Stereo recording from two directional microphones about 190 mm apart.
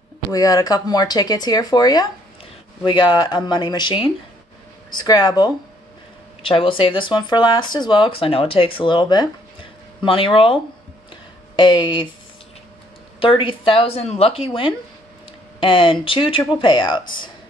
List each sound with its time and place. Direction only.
0.3 s speech: 20° left (ahead or behind)
6.4 s speech: 30° left (ahead or behind)
13.2 s speech: 25° left (ahead or behind)